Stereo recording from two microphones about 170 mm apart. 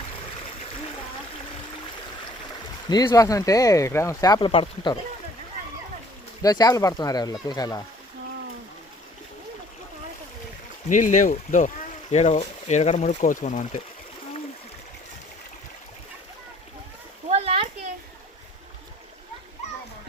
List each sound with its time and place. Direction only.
2.9 s speech: 20° left (ahead or behind)
6.4 s speech: 20° left (ahead or behind)
10.8 s speech: 50° left (ahead or behind)
17.2 s a sound: 35° right (ahead or behind)